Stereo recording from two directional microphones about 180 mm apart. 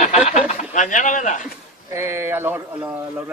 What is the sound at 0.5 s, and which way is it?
Speech, 45° left (ahead or behind).